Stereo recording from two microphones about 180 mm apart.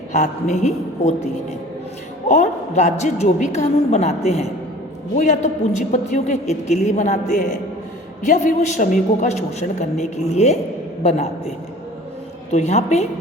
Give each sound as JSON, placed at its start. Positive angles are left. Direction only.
{"t": 0.2, "sound": "a man's voice", "side_deg": 40}